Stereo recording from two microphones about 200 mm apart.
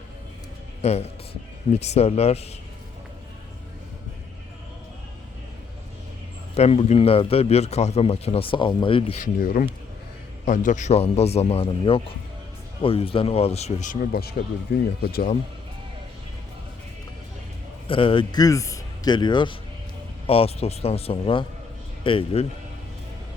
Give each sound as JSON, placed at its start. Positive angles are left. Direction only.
{"t": 0.8, "sound": "a man's voice", "side_deg": 30}
{"t": 6.5, "sound": "a man's voice", "side_deg": 30}
{"t": 9.1, "sound": "a man's voice", "side_deg": 45}
{"t": 15.0, "sound": "speech", "side_deg": 45}
{"t": 17.8, "sound": "a man's voice", "side_deg": 25}